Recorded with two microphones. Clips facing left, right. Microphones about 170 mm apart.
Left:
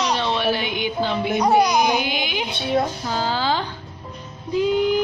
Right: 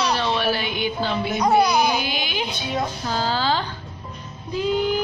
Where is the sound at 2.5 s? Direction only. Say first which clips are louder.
Left 8 dB; 60° left (ahead or behind).